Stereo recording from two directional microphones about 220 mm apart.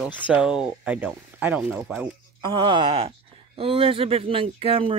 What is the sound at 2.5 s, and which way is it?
Speech, 20° right (ahead or behind).